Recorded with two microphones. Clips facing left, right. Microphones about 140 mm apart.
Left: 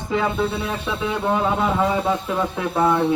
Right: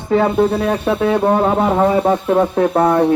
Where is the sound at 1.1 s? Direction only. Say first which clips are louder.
Right 5 dB; 45° right (ahead or behind).